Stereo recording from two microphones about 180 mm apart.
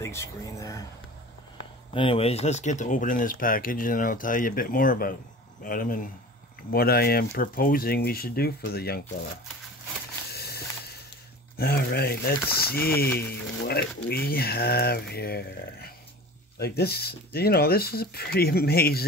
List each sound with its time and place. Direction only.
0.0 s speech: 15° left (ahead or behind)
2.0 s speech: 30° left (ahead or behind); by 9.4 s 60° left (ahead or behind)
10.3 s a sound: 60° left (ahead or behind)
11.5 s speech: 60° left (ahead or behind)